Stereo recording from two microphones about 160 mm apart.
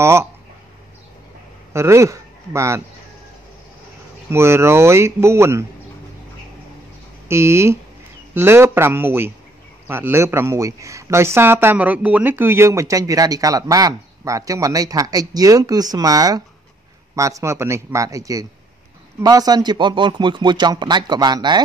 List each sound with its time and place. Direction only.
0.0 s speech: 15° right (ahead or behind)
1.7 s speech: 15° right (ahead or behind)
4.3 s speech: 15° right (ahead or behind)
7.2 s a man's voice: 15° right (ahead or behind)